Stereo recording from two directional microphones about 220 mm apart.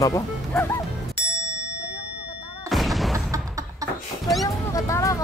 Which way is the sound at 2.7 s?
Centre (ahead or behind).